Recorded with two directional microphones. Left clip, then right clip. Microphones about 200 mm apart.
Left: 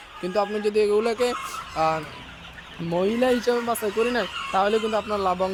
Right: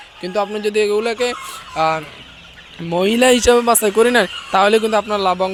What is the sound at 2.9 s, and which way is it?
Speech, 20° right (ahead or behind).